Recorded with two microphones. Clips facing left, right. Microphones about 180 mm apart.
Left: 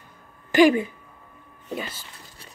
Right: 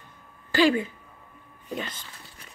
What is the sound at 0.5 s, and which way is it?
Speech, 20° left (ahead or behind).